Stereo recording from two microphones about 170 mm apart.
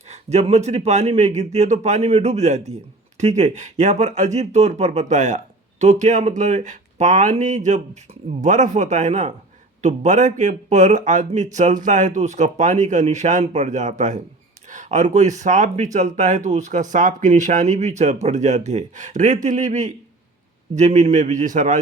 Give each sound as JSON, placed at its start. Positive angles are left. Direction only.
{"t": 0.1, "sound": "a man's voice", "side_deg": -40}